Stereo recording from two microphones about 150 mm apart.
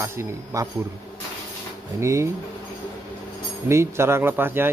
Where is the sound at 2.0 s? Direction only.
20° right (ahead or behind).